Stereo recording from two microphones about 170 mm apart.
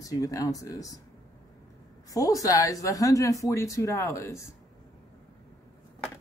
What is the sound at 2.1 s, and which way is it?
Speech, 20° left (ahead or behind).